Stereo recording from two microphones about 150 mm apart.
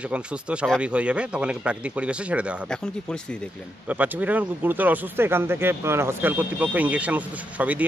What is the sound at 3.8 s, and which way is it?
Speech, 10° right (ahead or behind).